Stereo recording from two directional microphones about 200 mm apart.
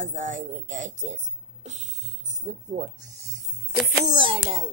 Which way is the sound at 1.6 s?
35° right (ahead or behind).